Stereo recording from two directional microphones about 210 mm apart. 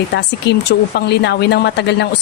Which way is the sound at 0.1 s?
55° left (ahead or behind).